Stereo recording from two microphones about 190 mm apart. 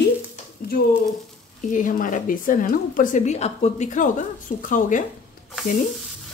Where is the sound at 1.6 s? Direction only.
40° left (ahead or behind).